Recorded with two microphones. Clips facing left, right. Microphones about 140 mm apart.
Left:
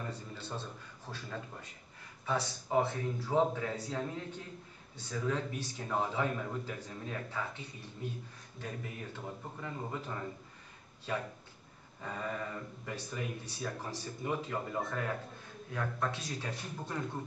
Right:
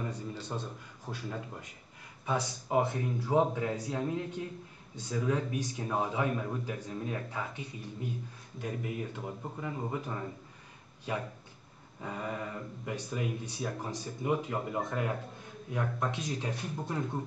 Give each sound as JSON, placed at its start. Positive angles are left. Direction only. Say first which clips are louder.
{"t": 0.1, "sound": "a man's voice", "louder": "right 4 dB", "side_deg": -15}
{"t": 12.0, "sound": "speech", "louder": "right 2 dB", "side_deg": -15}